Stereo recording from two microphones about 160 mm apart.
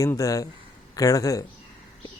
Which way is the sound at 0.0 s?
20° left (ahead or behind).